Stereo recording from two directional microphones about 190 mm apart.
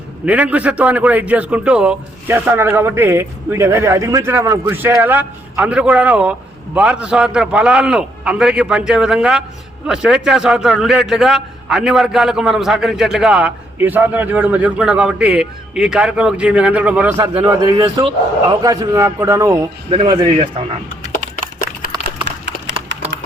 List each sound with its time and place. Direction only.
0.3 s a man's voice: 10° right (ahead or behind)
17.2 s a man's voice: 20° right (ahead or behind)
21.6 s a sound: 60° right (ahead or behind)